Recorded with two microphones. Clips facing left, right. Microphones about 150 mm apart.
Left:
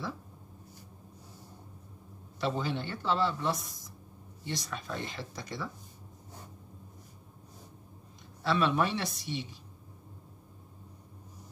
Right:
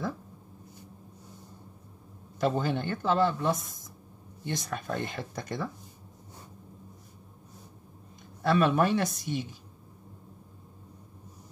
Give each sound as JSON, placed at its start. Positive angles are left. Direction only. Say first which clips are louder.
{"t": 2.4, "sound": "speech", "louder": "right 5 dB", "side_deg": -50}
{"t": 8.4, "sound": "speech", "louder": "right 4 dB", "side_deg": -50}